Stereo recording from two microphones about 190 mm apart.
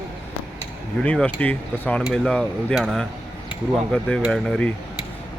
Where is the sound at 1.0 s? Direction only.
5° left (ahead or behind).